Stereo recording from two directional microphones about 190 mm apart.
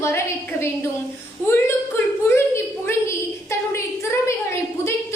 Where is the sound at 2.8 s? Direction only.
15° left (ahead or behind).